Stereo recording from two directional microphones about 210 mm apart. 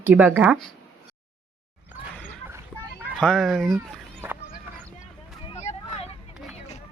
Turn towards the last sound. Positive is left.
turn(degrees=30)  # may be behind; listen again after turning